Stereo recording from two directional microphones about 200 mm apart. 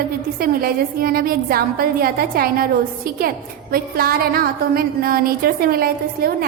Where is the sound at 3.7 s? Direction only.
50° right (ahead or behind).